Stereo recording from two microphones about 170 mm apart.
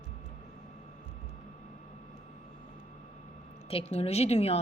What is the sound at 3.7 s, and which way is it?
Speech, 35° left (ahead or behind).